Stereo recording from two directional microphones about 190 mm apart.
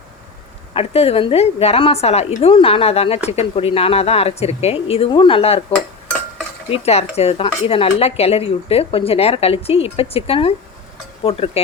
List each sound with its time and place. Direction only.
0.7 s speech: 30° left (ahead or behind)
6.7 s speech: 35° left (ahead or behind)